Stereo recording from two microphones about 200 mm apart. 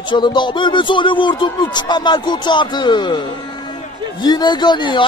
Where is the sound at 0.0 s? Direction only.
25° left (ahead or behind).